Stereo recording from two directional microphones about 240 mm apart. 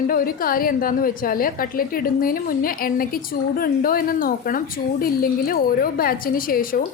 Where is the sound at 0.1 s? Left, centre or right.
Left.